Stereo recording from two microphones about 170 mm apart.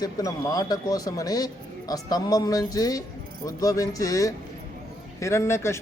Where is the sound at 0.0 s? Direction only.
20° left (ahead or behind).